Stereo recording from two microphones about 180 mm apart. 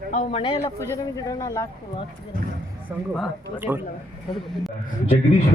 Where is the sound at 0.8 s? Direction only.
15° left (ahead or behind).